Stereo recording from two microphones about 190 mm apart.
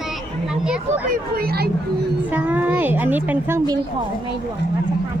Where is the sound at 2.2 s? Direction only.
10° right (ahead or behind).